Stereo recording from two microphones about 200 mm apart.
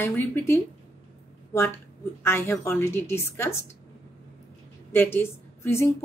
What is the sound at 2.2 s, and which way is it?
A woman's voice, 10° left (ahead or behind).